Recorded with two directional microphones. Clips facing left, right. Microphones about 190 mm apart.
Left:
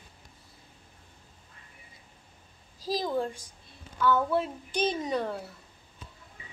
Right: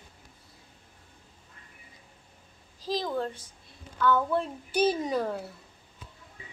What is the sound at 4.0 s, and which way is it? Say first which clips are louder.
Child singing: even; 10° left (ahead or behind).